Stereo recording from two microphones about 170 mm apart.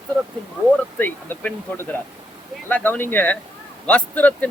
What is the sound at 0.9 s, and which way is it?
Speech, 10° left (ahead or behind).